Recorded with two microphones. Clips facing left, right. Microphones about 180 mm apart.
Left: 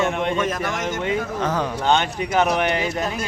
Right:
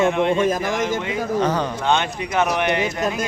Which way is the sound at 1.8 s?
35° left (ahead or behind).